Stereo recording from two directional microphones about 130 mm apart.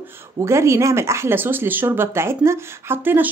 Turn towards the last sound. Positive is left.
turn(degrees=-15)  # may be behind; listen again after turning